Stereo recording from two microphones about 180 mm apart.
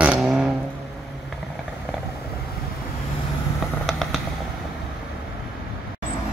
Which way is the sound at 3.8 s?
Centre (ahead or behind).